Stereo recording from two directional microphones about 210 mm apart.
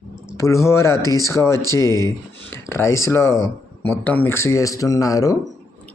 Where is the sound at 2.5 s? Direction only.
10° left (ahead or behind).